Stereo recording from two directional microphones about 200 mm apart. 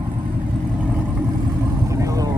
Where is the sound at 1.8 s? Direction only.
15° right (ahead or behind).